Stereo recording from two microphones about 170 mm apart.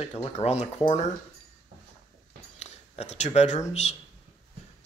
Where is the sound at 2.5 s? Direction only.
40° left (ahead or behind).